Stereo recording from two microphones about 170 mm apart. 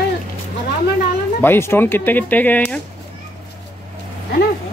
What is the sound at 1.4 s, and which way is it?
Speech, 15° left (ahead or behind).